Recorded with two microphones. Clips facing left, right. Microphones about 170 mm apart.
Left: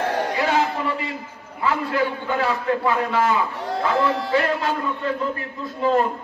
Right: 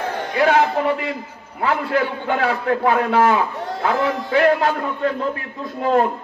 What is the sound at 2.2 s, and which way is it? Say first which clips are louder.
A man's voice: right 2 dB; 60° right (ahead or behind).